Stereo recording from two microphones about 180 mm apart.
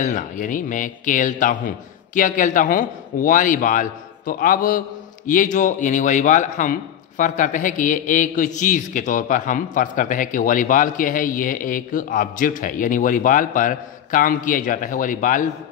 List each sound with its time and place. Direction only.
0.0 s a man's voice: 45° left (ahead or behind)